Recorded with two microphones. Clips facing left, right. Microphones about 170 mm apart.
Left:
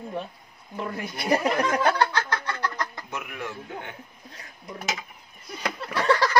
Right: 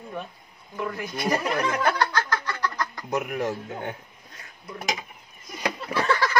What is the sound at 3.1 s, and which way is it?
Speech, 40° right (ahead or behind).